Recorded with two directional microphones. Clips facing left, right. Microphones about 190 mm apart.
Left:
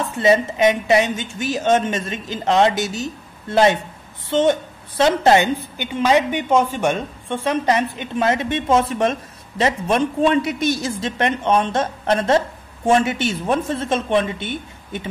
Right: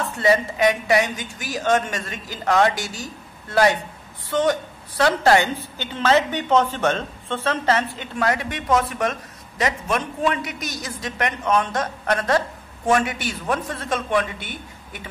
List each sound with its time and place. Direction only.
0.0 s a woman's voice: 20° left (ahead or behind)